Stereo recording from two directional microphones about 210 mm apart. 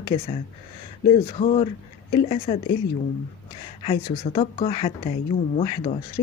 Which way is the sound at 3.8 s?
30° left (ahead or behind).